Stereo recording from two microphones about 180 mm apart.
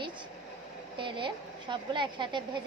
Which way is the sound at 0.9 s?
25° right (ahead or behind).